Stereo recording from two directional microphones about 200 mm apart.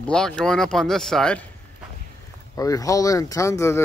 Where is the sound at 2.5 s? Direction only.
15° left (ahead or behind).